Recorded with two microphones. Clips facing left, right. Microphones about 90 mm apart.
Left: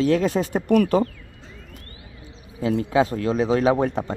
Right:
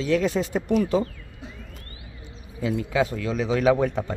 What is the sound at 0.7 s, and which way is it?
Speech, 60° left (ahead or behind).